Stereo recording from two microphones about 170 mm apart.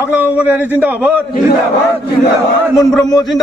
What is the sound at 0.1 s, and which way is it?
Speech, 10° right (ahead or behind).